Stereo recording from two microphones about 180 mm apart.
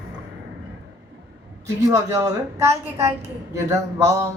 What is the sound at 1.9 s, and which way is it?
A man's voice, 20° right (ahead or behind).